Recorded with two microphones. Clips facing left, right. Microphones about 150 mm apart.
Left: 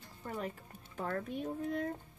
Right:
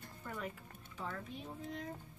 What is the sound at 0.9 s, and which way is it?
Music, 50° left (ahead or behind).